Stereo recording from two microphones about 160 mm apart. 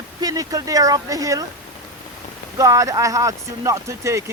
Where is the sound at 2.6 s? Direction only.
20° right (ahead or behind).